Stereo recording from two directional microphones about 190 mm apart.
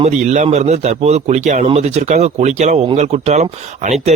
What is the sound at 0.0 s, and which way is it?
A man's voice, 40° right (ahead or behind).